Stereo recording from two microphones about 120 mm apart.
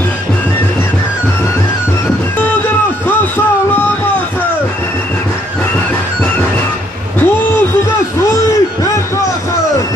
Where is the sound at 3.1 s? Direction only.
15° left (ahead or behind).